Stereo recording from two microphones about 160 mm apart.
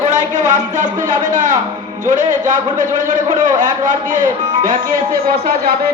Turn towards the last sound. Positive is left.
turn(degrees=-70)  # may be behind; listen again after turning